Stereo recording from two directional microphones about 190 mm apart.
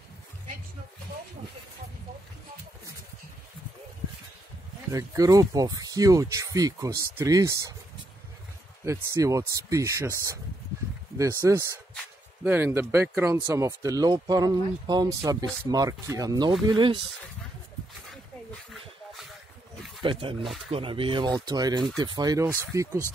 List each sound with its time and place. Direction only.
4.9 s speech: 20° right (ahead or behind)
8.8 s speech: 15° right (ahead or behind)
18.7 s a sound: centre (ahead or behind)
20.0 s speech: 25° right (ahead or behind)